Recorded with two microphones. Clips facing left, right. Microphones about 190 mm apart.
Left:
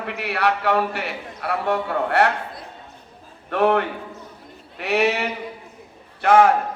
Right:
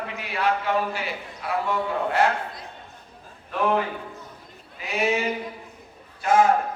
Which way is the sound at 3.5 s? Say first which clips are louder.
Left 5 dB; 70° left (ahead or behind).